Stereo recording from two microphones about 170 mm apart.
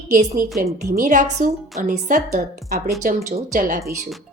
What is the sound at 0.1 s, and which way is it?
A woman's voice, 50° right (ahead or behind).